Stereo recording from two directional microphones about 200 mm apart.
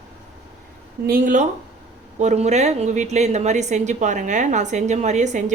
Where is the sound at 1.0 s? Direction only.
45° right (ahead or behind).